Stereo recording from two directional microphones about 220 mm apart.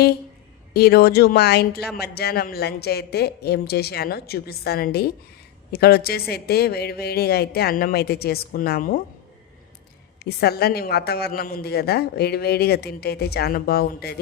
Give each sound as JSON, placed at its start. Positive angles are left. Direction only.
{"t": 0.7, "sound": "a woman's voice", "side_deg": 45}
{"t": 10.2, "sound": "a woman's voice", "side_deg": 45}